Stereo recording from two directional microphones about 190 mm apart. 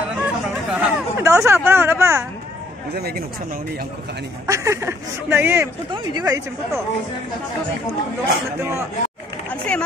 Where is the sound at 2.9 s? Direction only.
55° right (ahead or behind).